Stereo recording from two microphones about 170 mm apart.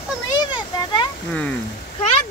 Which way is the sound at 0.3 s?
25° left (ahead or behind).